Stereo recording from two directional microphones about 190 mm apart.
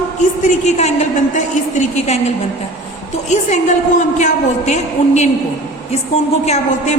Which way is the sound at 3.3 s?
40° left (ahead or behind).